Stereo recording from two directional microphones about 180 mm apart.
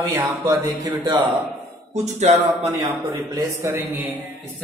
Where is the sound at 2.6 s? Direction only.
25° right (ahead or behind).